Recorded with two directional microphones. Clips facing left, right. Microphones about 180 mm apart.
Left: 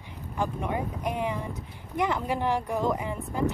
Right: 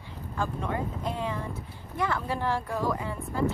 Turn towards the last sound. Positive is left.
turn(degrees=20)  # may be behind; listen again after turning